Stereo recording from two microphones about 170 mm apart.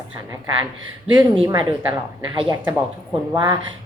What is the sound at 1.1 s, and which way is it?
A woman's voice, 30° right (ahead or behind).